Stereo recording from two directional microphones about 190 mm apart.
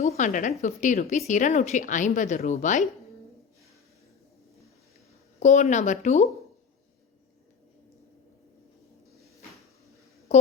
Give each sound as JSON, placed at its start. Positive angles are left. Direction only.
{"t": 0.0, "sound": "a woman's voice", "side_deg": 40}
{"t": 5.4, "sound": "a woman's voice", "side_deg": 40}